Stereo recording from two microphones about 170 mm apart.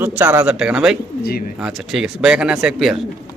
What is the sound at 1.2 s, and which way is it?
Speech, 65° left (ahead or behind).